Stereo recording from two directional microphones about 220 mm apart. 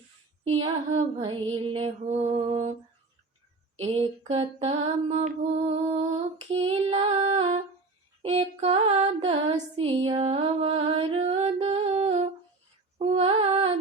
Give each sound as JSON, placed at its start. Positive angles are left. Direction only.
{"t": 0.9, "sound": "mantra", "side_deg": -25}
{"t": 3.8, "sound": "mantra", "side_deg": -25}
{"t": 8.2, "sound": "music", "side_deg": -25}
{"t": 13.0, "sound": "mantra", "side_deg": -25}